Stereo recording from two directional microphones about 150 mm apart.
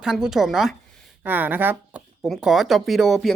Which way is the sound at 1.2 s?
10° right (ahead or behind).